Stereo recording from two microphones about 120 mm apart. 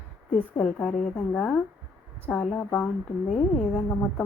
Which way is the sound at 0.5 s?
10° left (ahead or behind).